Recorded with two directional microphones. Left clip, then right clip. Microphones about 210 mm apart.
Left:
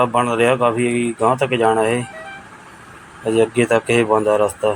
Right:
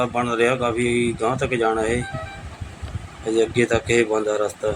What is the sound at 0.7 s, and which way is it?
Speech, 65° left (ahead or behind).